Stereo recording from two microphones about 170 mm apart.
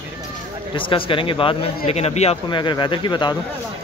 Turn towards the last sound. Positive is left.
turn(degrees=25)  # may be behind; listen again after turning